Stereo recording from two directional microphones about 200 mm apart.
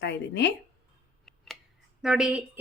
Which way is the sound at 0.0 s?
60° left (ahead or behind).